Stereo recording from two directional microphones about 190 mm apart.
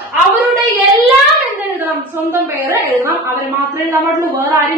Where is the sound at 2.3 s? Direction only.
15° right (ahead or behind).